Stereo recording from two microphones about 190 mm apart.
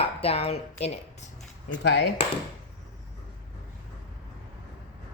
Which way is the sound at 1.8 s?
65° left (ahead or behind).